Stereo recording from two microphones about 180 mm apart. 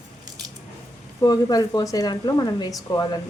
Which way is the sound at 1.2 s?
20° left (ahead or behind).